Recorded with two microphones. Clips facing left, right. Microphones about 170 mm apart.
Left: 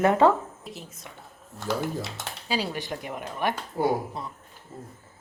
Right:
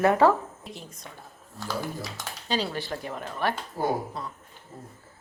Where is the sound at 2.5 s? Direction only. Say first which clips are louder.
Even; 15° left (ahead or behind).